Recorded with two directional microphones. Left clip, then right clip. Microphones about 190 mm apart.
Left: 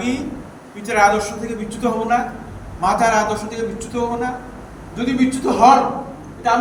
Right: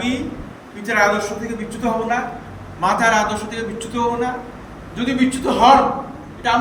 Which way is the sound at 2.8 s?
15° right (ahead or behind).